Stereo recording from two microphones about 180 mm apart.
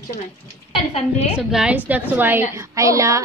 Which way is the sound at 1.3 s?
5° right (ahead or behind).